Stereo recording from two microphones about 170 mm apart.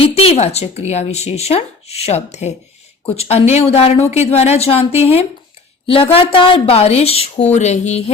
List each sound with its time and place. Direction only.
0.0 s speech: 35° left (ahead or behind)